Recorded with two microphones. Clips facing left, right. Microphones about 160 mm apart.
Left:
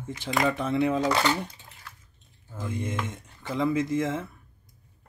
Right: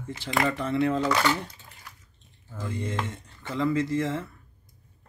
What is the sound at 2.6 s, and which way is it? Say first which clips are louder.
Speech: even; 15° left (ahead or behind).